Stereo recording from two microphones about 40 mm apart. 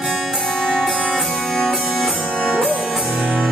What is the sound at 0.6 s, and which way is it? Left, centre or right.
Music, centre.